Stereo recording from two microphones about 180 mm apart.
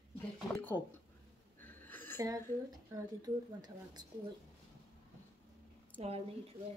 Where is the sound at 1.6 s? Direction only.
10° left (ahead or behind).